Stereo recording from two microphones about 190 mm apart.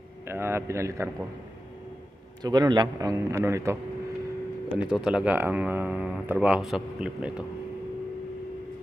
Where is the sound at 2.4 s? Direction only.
20° right (ahead or behind).